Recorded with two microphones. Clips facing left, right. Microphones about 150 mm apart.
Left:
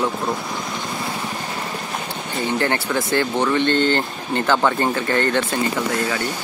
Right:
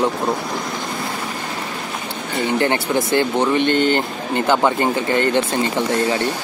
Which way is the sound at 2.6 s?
20° right (ahead or behind).